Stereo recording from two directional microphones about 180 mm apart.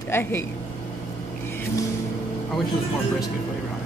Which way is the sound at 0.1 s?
10° left (ahead or behind).